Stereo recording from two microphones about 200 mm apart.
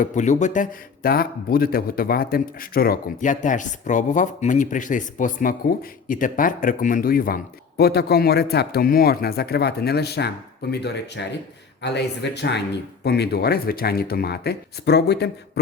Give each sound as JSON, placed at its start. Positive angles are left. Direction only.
{"t": 0.0, "sound": "a man's voice", "side_deg": 35}